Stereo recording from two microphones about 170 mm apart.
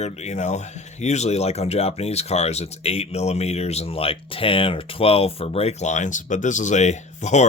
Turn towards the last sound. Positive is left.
turn(degrees=45)  # may be behind; listen again after turning